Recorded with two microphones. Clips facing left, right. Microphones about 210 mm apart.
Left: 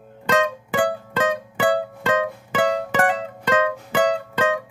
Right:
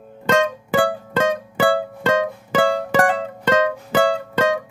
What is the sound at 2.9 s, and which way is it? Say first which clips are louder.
Music: right 3 dB; 35° right (ahead or behind).